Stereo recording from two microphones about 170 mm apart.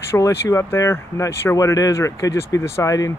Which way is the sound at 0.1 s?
15° left (ahead or behind).